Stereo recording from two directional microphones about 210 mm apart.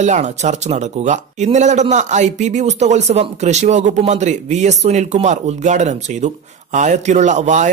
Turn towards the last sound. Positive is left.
turn(degrees=-35)  # may be behind; listen again after turning